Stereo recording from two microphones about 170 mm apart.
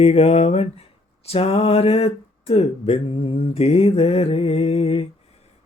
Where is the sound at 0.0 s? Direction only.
40° left (ahead or behind).